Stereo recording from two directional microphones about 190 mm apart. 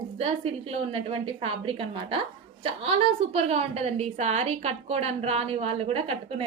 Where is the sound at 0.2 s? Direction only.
35° right (ahead or behind).